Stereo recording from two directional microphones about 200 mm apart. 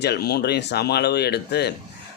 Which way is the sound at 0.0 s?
55° left (ahead or behind).